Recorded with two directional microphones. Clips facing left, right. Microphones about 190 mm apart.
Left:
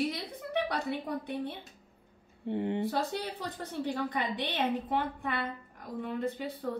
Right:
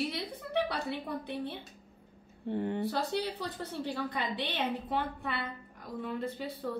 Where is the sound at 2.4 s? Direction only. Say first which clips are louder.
Left 1 dB; 20° left (ahead or behind).